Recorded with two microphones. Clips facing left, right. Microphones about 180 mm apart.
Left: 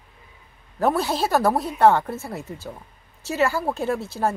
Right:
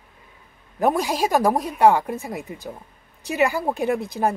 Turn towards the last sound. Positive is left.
turn(degrees=-15)  # may be behind; listen again after turning